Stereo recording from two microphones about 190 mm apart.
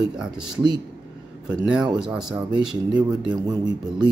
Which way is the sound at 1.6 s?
5° right (ahead or behind).